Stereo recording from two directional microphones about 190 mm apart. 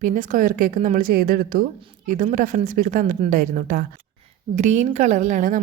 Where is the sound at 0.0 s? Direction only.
45° right (ahead or behind).